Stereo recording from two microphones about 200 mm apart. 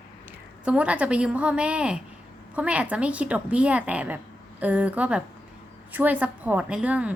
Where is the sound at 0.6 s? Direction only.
5° right (ahead or behind).